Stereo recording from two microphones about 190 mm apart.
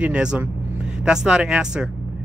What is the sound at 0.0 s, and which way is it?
Speech, 5° right (ahead or behind).